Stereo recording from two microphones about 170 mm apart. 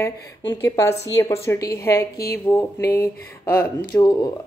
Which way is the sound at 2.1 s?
65° left (ahead or behind).